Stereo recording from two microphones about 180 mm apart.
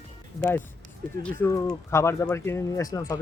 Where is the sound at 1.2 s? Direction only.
15° left (ahead or behind).